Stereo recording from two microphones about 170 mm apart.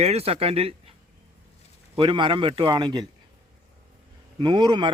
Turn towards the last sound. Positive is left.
turn(degrees=-25)  # may be behind; listen again after turning